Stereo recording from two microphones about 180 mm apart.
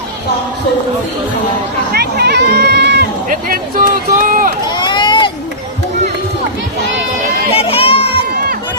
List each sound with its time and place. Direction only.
1.9 s speech: 60° right (ahead or behind)
3.2 s speech: 50° right (ahead or behind)
4.6 s run: 25° left (ahead or behind)
7.5 s a sound: 30° left (ahead or behind)